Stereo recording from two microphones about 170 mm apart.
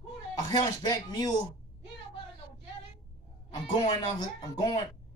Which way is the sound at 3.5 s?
25° left (ahead or behind).